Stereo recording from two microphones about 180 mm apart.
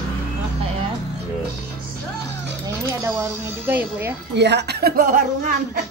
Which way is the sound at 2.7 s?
15° right (ahead or behind).